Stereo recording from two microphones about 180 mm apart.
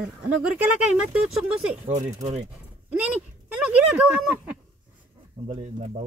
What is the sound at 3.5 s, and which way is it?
Speech, 5° right (ahead or behind).